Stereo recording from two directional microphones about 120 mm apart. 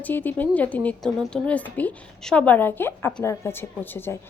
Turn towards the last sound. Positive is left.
turn(degrees=20)  # may be behind; listen again after turning